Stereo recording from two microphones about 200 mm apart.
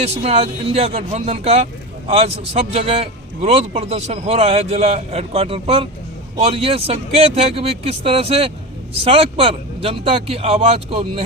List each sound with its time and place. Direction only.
0.0 s a man's voice: 30° right (ahead or behind)